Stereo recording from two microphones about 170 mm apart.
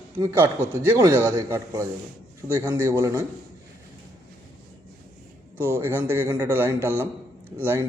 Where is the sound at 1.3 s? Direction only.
20° right (ahead or behind).